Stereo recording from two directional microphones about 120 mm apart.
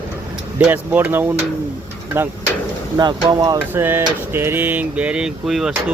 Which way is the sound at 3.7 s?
20° right (ahead or behind).